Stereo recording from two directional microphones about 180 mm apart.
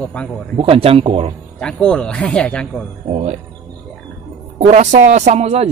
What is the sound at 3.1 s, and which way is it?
Speech, 35° right (ahead or behind).